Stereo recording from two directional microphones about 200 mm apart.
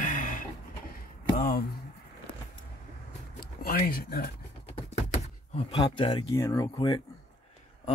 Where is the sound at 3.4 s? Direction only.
50° left (ahead or behind).